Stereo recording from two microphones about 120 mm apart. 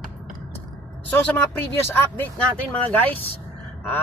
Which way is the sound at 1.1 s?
15° left (ahead or behind).